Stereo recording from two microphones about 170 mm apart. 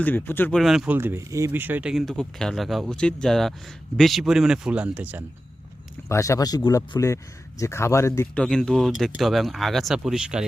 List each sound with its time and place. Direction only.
0.0 s speech: 10° left (ahead or behind)
0.6 s speech: centre (ahead or behind)
0.9 s speech: 15° right (ahead or behind)
6.1 s speech: 15° left (ahead or behind)
8.4 s speech: 5° left (ahead or behind)